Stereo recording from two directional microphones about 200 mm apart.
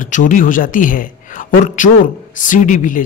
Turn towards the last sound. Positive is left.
turn(degrees=40)  # may be behind; listen again after turning